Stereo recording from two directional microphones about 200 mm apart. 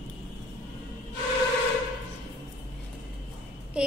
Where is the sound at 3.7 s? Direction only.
5° right (ahead or behind).